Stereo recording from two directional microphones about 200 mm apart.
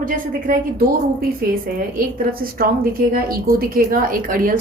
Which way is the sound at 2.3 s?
45° right (ahead or behind).